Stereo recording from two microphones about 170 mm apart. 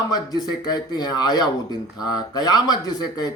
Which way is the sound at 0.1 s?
25° left (ahead or behind).